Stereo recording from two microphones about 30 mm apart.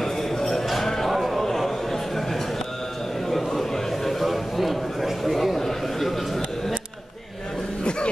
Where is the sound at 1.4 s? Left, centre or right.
Centre.